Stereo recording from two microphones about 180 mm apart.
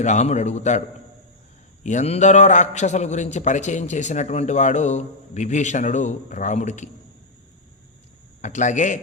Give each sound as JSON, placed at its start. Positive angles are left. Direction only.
{"t": 0.0, "sound": "a man's voice", "side_deg": 40}
{"t": 1.8, "sound": "a man's voice", "side_deg": 40}
{"t": 8.4, "sound": "speech", "side_deg": 45}